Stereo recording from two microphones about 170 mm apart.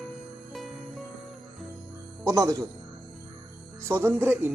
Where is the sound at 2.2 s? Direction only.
20° right (ahead or behind).